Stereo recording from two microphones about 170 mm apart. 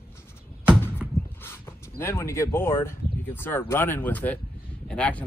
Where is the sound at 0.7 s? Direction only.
10° left (ahead or behind).